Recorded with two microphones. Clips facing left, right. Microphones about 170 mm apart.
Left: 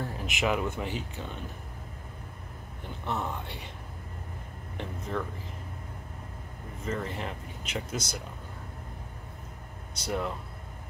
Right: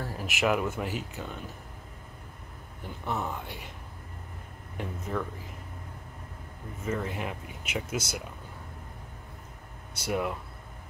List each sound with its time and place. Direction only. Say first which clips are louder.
0.0 s speech: right 1 dB; 5° right (ahead or behind)
3.1 s speech: even; 10° right (ahead or behind)
4.7 s speech: right 1 dB; 5° right (ahead or behind)
6.8 s speech: right 1 dB; 10° right (ahead or behind)
9.9 s speech: right 2 dB; 10° right (ahead or behind)